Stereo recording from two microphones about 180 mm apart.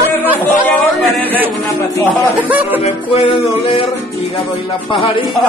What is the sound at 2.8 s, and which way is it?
Music, 30° left (ahead or behind).